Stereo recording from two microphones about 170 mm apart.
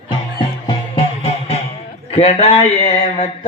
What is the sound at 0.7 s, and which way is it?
Music, 35° left (ahead or behind).